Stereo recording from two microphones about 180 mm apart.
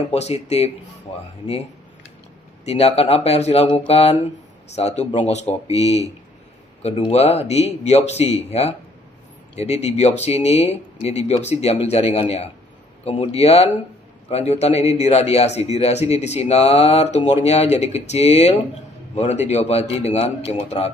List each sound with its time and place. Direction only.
0.1 s a man's voice: 35° left (ahead or behind)
2.6 s a man's voice: 35° left (ahead or behind)